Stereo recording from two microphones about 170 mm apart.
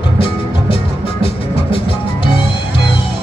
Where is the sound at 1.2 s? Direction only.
35° left (ahead or behind).